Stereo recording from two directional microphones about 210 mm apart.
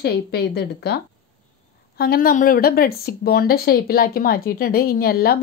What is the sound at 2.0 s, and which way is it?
A woman's voice, 45° left (ahead or behind).